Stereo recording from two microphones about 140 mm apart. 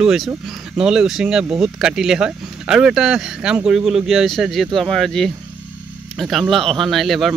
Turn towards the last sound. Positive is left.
turn(degrees=0)  # may be behind; listen again after turning